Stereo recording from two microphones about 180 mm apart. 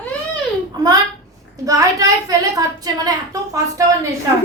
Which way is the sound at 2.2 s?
20° right (ahead or behind).